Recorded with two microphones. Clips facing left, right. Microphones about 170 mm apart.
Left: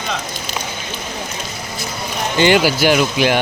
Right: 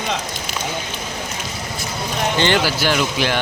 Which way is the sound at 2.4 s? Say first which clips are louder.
Left 7 dB; 10° left (ahead or behind).